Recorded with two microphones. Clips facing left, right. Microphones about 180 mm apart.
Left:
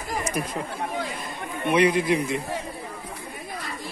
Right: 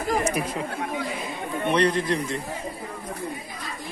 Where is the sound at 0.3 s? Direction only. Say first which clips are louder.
Right 1 dB; 5° right (ahead or behind).